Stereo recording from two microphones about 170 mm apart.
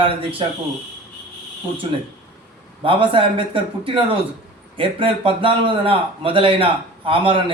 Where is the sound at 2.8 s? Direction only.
30° right (ahead or behind).